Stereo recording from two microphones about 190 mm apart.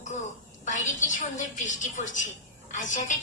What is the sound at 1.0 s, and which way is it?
A woman's voice, 40° left (ahead or behind).